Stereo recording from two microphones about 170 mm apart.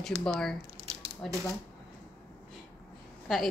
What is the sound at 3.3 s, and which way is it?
Speech, centre (ahead or behind).